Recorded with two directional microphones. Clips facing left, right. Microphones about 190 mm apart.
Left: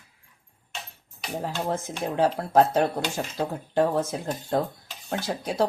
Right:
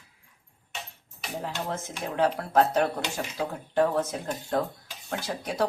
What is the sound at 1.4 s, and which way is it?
Speech, 35° left (ahead or behind).